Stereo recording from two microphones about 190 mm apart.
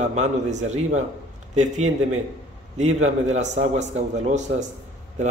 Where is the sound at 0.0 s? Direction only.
40° right (ahead or behind).